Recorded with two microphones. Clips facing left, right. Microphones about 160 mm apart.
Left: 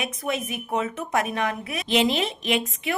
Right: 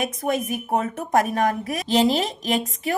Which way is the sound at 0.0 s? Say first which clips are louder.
Right 4 dB; 45° right (ahead or behind).